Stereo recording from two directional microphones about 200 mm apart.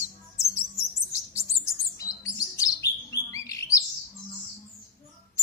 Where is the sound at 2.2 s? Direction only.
15° left (ahead or behind).